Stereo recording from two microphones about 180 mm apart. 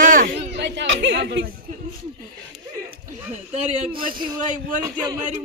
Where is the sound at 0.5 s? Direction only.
75° right (ahead or behind).